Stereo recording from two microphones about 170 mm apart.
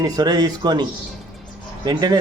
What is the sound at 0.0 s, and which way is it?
Speech, 25° right (ahead or behind).